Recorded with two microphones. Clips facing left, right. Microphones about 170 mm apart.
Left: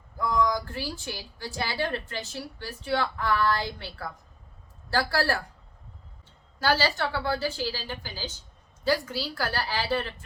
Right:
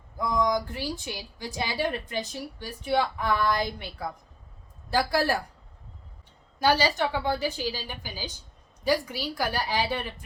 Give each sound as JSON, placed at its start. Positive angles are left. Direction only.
{"t": 0.2, "sound": "a woman's voice", "side_deg": -20}
{"t": 6.6, "sound": "a woman's voice", "side_deg": -15}